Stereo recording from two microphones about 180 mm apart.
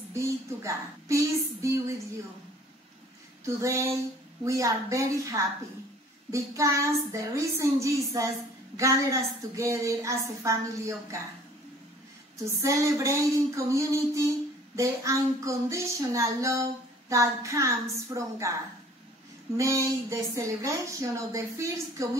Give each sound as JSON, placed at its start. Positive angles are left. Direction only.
{"t": 0.1, "sound": "a woman's voice", "side_deg": -15}
{"t": 3.4, "sound": "a woman's voice", "side_deg": -15}
{"t": 12.6, "sound": "a woman's voice", "side_deg": -15}
{"t": 19.5, "sound": "a woman's voice", "side_deg": -15}